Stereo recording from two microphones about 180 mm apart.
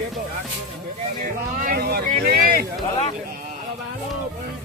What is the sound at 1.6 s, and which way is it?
Speech, 55° right (ahead or behind).